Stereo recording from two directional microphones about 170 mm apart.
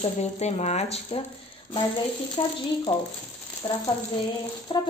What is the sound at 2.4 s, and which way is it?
Speech, 30° left (ahead or behind).